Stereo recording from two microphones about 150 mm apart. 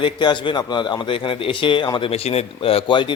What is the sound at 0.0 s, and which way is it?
A man's voice, 30° left (ahead or behind).